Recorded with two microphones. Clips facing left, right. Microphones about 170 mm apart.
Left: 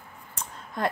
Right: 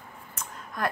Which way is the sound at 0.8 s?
25° left (ahead or behind).